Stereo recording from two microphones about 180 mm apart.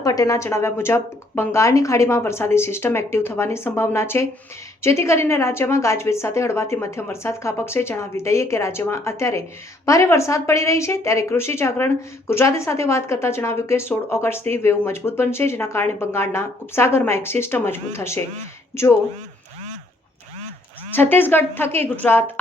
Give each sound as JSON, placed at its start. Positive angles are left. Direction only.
{"t": 0.0, "sound": "speech", "side_deg": 20}
{"t": 20.9, "sound": "speech", "side_deg": 10}